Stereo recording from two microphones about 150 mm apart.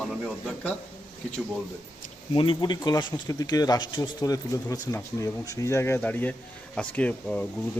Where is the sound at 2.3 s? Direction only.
35° left (ahead or behind); by 7.4 s 10° left (ahead or behind).